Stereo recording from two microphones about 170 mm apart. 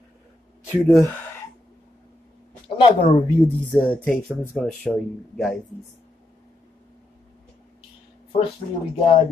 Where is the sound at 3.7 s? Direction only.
5° left (ahead or behind).